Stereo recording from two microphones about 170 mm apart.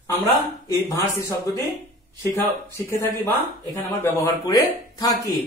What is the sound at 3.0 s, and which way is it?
Speech, 10° left (ahead or behind).